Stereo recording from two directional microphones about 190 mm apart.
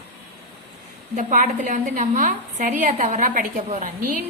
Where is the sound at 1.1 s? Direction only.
45° right (ahead or behind).